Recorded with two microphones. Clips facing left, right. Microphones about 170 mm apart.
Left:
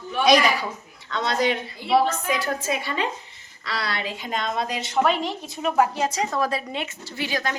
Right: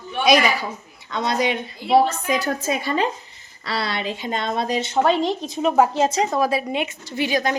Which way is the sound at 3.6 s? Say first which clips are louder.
Right 4 dB; 30° right (ahead or behind).